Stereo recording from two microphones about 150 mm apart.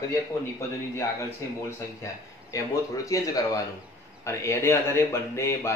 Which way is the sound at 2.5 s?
20° left (ahead or behind).